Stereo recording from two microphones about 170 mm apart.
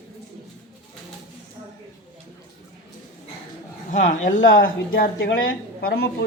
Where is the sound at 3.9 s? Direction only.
45° left (ahead or behind); by 6.0 s 60° left (ahead or behind).